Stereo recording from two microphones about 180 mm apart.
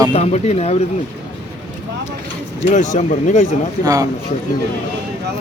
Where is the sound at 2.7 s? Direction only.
40° left (ahead or behind).